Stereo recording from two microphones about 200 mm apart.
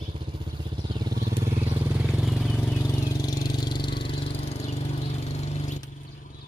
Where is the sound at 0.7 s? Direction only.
20° right (ahead or behind); by 2.7 s centre (ahead or behind).